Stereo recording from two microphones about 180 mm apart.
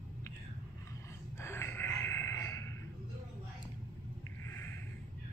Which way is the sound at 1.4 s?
15° left (ahead or behind).